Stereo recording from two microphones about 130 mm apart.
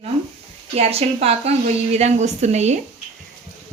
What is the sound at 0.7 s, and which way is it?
A woman's voice, 50° right (ahead or behind).